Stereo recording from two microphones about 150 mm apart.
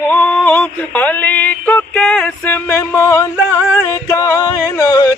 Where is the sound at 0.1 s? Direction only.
10° left (ahead or behind).